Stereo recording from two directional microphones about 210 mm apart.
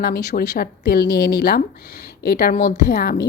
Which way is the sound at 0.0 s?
50° left (ahead or behind).